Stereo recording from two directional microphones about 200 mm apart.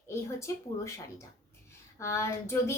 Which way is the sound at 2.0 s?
15° left (ahead or behind).